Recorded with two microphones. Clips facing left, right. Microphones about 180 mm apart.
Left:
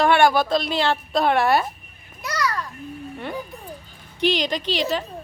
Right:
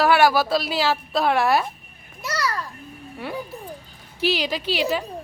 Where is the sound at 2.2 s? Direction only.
5° right (ahead or behind).